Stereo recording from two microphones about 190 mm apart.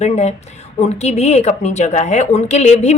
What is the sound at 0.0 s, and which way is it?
A woman's voice, 35° left (ahead or behind).